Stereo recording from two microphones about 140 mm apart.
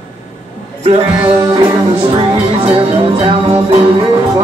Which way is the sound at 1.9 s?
40° right (ahead or behind).